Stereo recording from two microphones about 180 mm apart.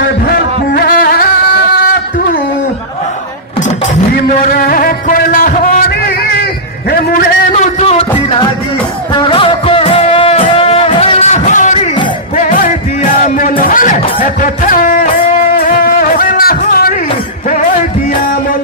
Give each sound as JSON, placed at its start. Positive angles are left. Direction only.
{"t": 0.3, "sound": "music", "side_deg": 55}
{"t": 4.1, "sound": "a sound", "side_deg": 55}
{"t": 7.1, "sound": "music", "side_deg": 45}